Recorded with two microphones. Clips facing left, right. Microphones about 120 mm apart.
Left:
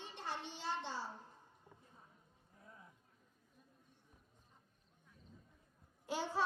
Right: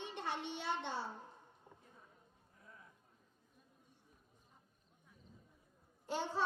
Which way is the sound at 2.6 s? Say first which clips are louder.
Left 1 dB; 25° left (ahead or behind).